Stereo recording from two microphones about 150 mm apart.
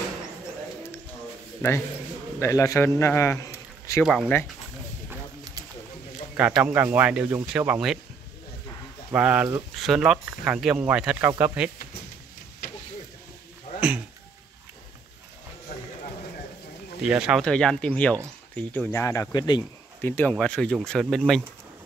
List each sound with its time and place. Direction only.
1.6 s a man's voice: 15° left (ahead or behind)
4.0 s speech: 5° right (ahead or behind)
6.6 s speech: 10° right (ahead or behind)
9.1 s speech: 10° right (ahead or behind)
12.6 s a sound: 85° left
13.7 s a sound: 10° right (ahead or behind)
17.0 s speech: 5° right (ahead or behind)
18.9 s a man's voice: 20° left (ahead or behind)
20.0 s speech: 10° left (ahead or behind)